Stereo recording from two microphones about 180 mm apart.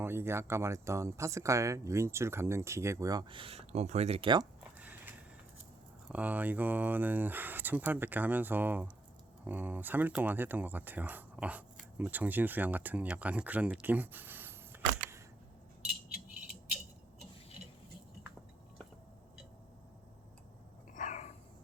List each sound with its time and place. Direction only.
0.0 s speech: 15° right (ahead or behind)
6.1 s speech: 10° right (ahead or behind)
20.9 s a sound: 45° left (ahead or behind)